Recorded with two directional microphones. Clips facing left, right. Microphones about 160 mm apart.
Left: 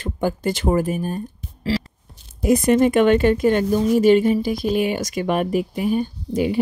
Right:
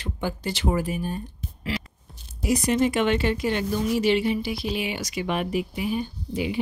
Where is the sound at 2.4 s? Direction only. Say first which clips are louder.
Left 6 dB; 50° left (ahead or behind).